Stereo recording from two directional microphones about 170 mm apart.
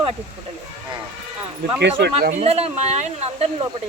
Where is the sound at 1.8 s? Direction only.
70° right (ahead or behind).